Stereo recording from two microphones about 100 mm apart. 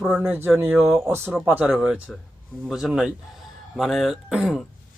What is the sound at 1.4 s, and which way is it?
Speech, 20° right (ahead or behind).